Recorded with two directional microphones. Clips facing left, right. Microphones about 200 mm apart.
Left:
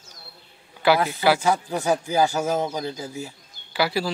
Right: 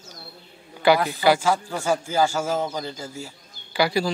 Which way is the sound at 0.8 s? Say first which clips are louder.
Right 1 dB; 5° left (ahead or behind).